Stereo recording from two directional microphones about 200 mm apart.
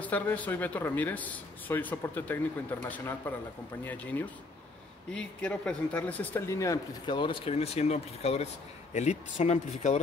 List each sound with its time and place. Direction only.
0.0 s speech: 5° left (ahead or behind); by 9.9 s 35° left (ahead or behind)